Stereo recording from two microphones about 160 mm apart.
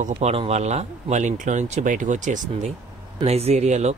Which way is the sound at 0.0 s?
40° right (ahead or behind).